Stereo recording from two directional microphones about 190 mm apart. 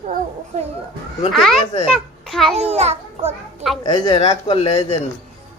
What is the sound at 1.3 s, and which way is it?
A woman's voice, centre (ahead or behind).